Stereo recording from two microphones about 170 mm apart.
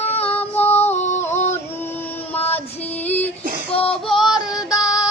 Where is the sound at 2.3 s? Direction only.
10° left (ahead or behind).